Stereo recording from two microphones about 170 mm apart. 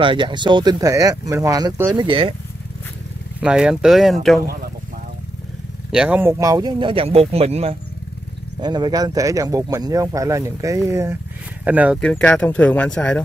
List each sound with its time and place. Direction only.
0.0 s speech: 30° right (ahead or behind)
3.3 s speech: 5° right (ahead or behind)
5.9 s speech: 5° right (ahead or behind); by 7.7 s 35° right (ahead or behind)
8.5 s speech: 25° right (ahead or behind); by 12.0 s 10° right (ahead or behind)
12.0 s speech: 5° left (ahead or behind)